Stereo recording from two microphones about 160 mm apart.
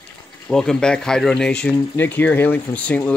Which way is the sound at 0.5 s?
5° left (ahead or behind).